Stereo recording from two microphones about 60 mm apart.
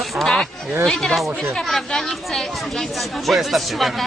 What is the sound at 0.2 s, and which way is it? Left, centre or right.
Speech, centre.